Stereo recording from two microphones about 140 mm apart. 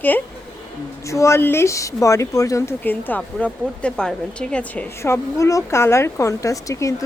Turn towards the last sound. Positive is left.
turn(degrees=25)  # may be behind; listen again after turning